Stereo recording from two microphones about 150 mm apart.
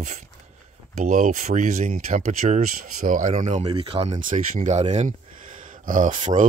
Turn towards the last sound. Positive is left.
turn(degrees=-60)  # may be behind; listen again after turning